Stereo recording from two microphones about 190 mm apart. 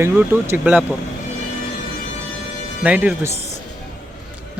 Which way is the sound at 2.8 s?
5° right (ahead or behind).